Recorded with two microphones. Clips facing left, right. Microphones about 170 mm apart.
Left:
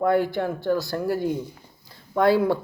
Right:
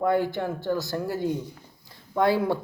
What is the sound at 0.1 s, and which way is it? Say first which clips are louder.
Speech: left 3 dB; 15° right (ahead or behind).